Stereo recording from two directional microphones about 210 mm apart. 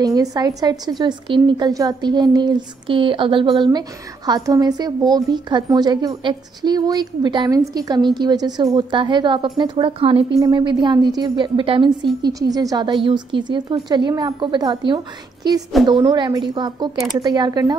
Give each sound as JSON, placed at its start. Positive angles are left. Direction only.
{"t": 0.0, "sound": "a woman's voice", "side_deg": -15}